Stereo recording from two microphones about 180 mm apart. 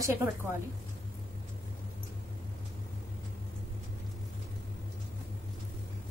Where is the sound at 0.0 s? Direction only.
15° right (ahead or behind).